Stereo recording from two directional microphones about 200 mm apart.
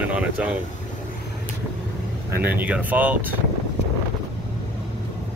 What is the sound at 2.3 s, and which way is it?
Speech, 10° right (ahead or behind).